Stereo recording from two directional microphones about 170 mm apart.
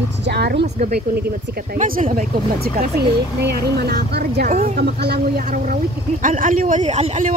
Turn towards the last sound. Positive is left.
turn(degrees=-40)  # may be behind; listen again after turning